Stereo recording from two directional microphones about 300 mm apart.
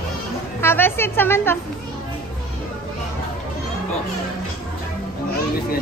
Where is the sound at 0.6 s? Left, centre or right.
Centre.